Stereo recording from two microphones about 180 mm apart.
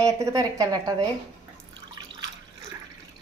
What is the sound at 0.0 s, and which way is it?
A child's voice, 15° right (ahead or behind).